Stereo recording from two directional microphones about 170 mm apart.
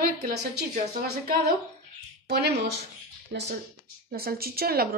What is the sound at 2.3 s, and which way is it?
A woman's voice, 75° right (ahead or behind).